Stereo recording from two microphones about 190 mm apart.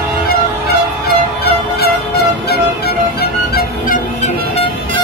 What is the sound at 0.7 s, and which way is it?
Music, 55° left (ahead or behind).